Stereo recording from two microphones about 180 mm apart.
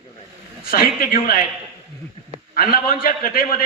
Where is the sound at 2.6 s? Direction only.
55° left (ahead or behind).